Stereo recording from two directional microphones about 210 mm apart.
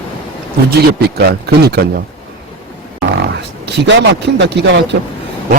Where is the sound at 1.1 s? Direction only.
50° right (ahead or behind).